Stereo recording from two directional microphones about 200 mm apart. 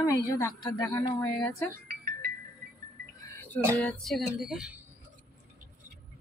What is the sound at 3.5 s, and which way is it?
Speech, 10° left (ahead or behind).